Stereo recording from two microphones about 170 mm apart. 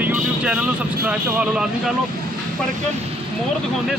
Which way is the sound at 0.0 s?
10° right (ahead or behind).